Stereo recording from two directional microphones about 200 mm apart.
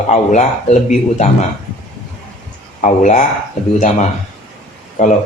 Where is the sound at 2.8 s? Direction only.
35° left (ahead or behind).